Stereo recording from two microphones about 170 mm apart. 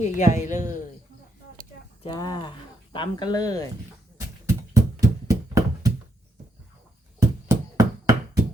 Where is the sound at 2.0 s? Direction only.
25° left (ahead or behind).